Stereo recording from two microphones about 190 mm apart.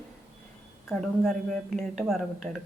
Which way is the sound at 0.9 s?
Centre (ahead or behind).